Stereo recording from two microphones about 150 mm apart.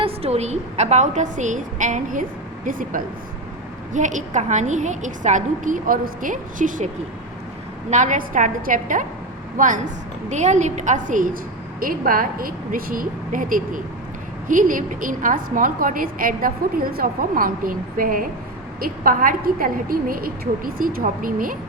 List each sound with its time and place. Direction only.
0.0 s a woman's voice: 45° right (ahead or behind); by 21.5 s 65° right (ahead or behind)